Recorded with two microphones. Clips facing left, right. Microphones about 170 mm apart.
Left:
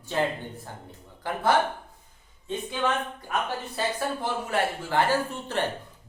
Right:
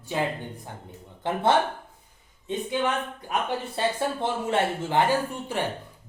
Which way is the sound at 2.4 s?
15° right (ahead or behind).